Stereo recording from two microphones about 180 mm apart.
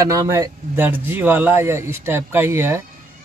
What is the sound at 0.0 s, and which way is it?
Speech, 20° right (ahead or behind).